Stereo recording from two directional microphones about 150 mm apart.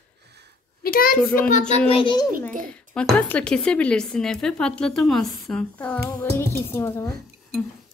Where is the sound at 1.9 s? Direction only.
35° left (ahead or behind).